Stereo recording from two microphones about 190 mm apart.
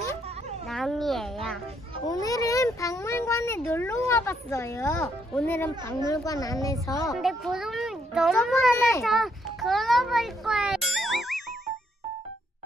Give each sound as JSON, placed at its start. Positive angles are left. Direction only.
{"t": 0.7, "sound": "music", "side_deg": 0}
{"t": 2.0, "sound": "a sound", "side_deg": 20}
{"t": 4.1, "sound": "a woman's voice", "side_deg": 15}
{"t": 5.0, "sound": "a woman's voice", "side_deg": 0}
{"t": 7.2, "sound": "a child's voice", "side_deg": 0}
{"t": 9.0, "sound": "a sound", "side_deg": 0}